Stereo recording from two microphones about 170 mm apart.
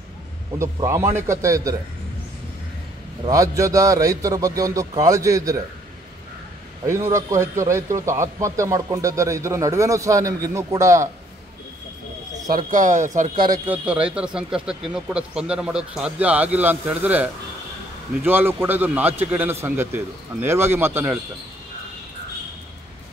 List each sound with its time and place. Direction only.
0.5 s a man's voice: 20° right (ahead or behind)
3.3 s a man's voice: 20° right (ahead or behind)
6.9 s a man's voice: 15° right (ahead or behind)
12.5 s speech: 50° right (ahead or behind)
13.7 s a man's voice: 5° right (ahead or behind)